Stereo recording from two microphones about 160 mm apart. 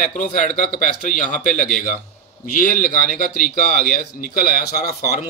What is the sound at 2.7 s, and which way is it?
Speech, 60° left (ahead or behind).